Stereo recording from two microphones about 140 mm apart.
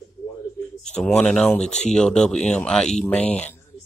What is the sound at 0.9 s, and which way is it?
Speech, 5° left (ahead or behind).